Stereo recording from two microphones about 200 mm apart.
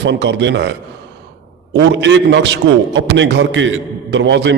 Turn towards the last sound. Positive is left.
turn(degrees=-60)  # may be behind; listen again after turning